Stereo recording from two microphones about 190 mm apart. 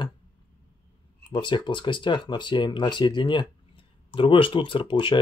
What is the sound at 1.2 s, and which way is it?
Speech, 25° left (ahead or behind).